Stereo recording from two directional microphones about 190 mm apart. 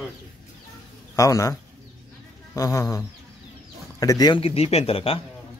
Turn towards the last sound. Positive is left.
turn(degrees=30)  # may be behind; listen again after turning